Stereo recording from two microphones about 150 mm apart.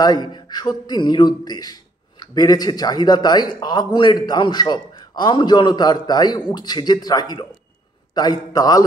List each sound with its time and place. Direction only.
0.0 s speech: 30° left (ahead or behind)